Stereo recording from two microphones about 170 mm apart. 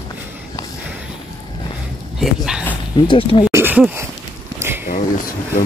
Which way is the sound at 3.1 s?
30° left (ahead or behind).